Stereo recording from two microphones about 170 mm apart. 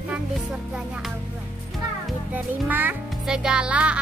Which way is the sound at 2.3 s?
10° right (ahead or behind).